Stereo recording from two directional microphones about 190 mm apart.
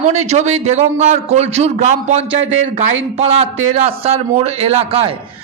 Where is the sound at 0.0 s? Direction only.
35° right (ahead or behind).